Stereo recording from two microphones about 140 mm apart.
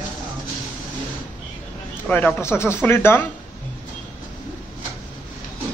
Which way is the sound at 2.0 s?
15° left (ahead or behind).